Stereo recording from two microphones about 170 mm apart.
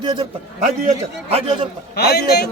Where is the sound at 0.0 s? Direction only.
30° right (ahead or behind).